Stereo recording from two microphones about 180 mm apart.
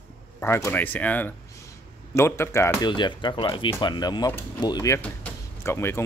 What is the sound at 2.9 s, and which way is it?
Speech, 25° left (ahead or behind).